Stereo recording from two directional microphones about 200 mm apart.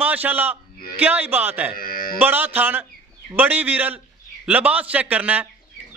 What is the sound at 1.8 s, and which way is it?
Speech, 45° left (ahead or behind).